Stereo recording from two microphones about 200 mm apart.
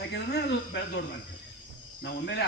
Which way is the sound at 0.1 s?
55° left (ahead or behind).